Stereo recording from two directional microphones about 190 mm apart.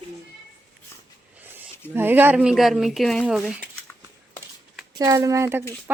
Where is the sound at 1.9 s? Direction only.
10° right (ahead or behind).